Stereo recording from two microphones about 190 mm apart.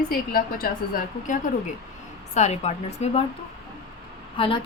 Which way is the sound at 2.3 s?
35° left (ahead or behind).